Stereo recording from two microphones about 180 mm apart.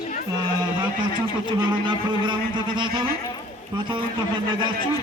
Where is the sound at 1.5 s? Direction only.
25° right (ahead or behind).